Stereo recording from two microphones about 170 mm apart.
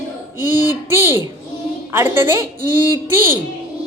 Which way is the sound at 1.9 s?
10° right (ahead or behind).